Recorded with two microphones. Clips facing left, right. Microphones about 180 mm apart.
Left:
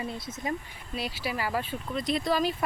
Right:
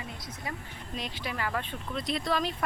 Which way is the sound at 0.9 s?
10° left (ahead or behind).